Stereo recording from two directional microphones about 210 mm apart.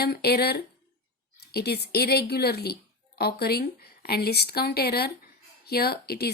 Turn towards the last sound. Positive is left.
turn(degrees=50)  # may be behind; listen again after turning